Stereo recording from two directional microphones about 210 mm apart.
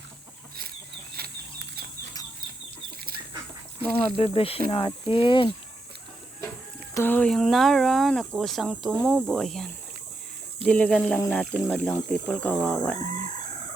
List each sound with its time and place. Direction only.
1.1 s a sound: 50° right (ahead or behind)
4.1 s speech: 25° left (ahead or behind)
6.9 s speech: 10° left (ahead or behind)